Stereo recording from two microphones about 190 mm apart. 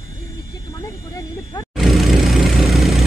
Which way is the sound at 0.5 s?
15° left (ahead or behind).